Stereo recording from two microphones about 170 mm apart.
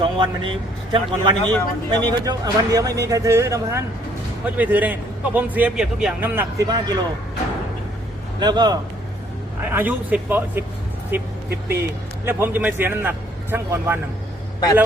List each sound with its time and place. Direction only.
0.0 s a man's voice: 30° right (ahead or behind)
8.4 s a man's voice: 25° right (ahead or behind)
9.6 s a man's voice: 10° right (ahead or behind)